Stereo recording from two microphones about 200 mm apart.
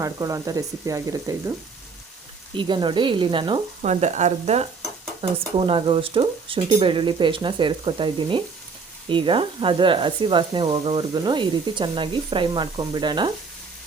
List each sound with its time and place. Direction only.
0.0 s speech: 15° right (ahead or behind)
2.6 s speech: 25° right (ahead or behind)
4.0 s speech: 35° right (ahead or behind)